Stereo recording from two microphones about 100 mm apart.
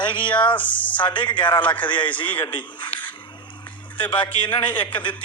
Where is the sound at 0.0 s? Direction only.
50° left (ahead or behind).